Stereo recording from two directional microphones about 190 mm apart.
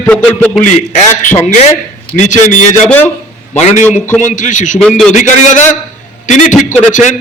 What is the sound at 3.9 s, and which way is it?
A man's voice, 40° left (ahead or behind).